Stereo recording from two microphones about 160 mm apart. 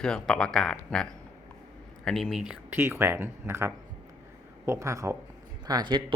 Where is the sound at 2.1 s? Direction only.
Centre (ahead or behind).